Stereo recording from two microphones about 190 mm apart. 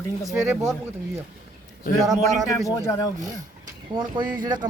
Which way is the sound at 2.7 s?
15° left (ahead or behind).